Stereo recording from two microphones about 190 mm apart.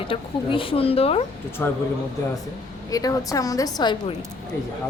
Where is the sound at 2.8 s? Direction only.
20° left (ahead or behind).